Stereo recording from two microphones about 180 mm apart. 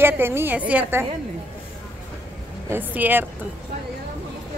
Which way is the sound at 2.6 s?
10° right (ahead or behind).